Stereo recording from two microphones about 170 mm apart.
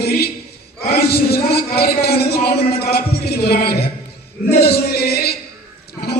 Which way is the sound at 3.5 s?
65° left (ahead or behind).